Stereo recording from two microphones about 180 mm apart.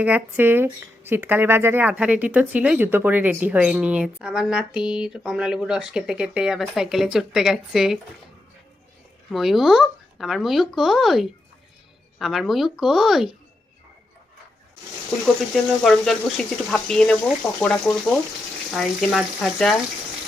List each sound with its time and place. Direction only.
0.0 s speech: 10° right (ahead or behind)
9.3 s speech: centre (ahead or behind)
15.5 s speech: centre (ahead or behind)
18.7 s speech: centre (ahead or behind)